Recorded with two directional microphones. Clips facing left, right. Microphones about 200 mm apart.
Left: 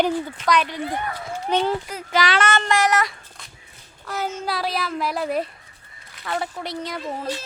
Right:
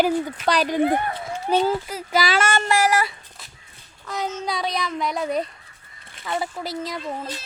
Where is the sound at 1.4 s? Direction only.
5° right (ahead or behind).